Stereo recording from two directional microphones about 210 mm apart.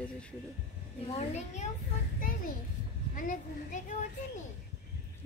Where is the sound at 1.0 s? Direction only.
30° left (ahead or behind).